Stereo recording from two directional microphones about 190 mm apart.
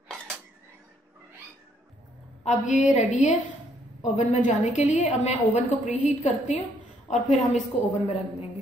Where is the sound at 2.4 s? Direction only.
40° left (ahead or behind).